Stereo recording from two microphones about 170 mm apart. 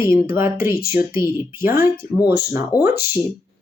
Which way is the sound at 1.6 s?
15° right (ahead or behind).